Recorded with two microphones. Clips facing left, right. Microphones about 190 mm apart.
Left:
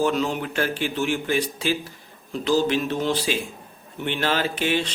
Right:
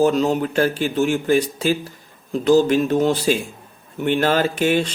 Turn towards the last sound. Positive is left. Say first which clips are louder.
# right 5 dB
turn(degrees=-45)  # may be behind; listen again after turning